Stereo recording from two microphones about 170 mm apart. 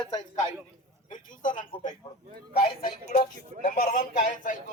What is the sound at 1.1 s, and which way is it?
Speech, 50° left (ahead or behind).